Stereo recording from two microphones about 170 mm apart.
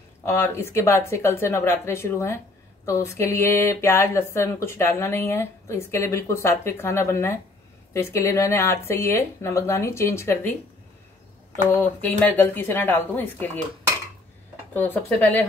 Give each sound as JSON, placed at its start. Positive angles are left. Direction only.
{"t": 0.2, "sound": "speech", "side_deg": 15}
{"t": 11.5, "sound": "speech", "side_deg": 10}
{"t": 14.7, "sound": "speech", "side_deg": 10}